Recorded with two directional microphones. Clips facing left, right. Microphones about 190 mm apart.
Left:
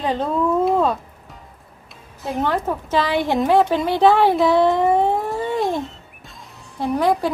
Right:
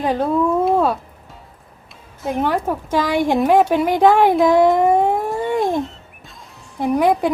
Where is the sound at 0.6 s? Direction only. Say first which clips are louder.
Right 1 dB; 10° right (ahead or behind).